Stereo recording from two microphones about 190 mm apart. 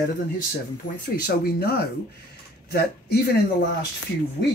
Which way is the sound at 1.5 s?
55° left (ahead or behind).